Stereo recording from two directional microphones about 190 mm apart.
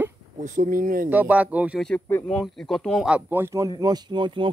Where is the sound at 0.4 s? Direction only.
40° right (ahead or behind).